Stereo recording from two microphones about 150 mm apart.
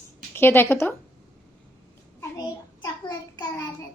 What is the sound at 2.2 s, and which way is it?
Child singing, 25° left (ahead or behind).